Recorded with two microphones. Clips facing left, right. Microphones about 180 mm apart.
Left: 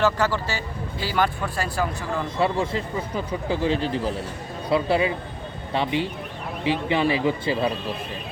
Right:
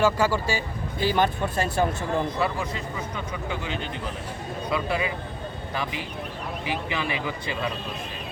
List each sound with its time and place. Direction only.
0.0 s speech: 10° right (ahead or behind)
2.4 s a man's voice: 30° left (ahead or behind)